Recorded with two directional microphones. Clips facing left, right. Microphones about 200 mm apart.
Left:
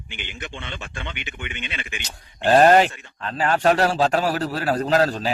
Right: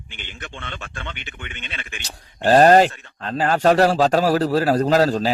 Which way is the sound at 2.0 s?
40° right (ahead or behind).